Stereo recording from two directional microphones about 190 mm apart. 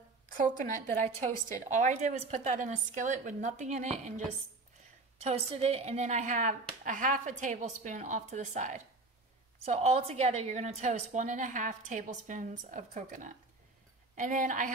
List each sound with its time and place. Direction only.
0.3 s a woman's voice: 45° right (ahead or behind)
5.2 s speech: 30° right (ahead or behind)